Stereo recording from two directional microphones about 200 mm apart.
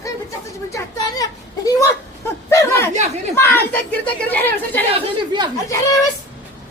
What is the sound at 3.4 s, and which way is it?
Speech, 10° left (ahead or behind).